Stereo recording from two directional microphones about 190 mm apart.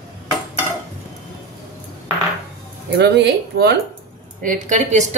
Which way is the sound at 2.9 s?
60° right (ahead or behind).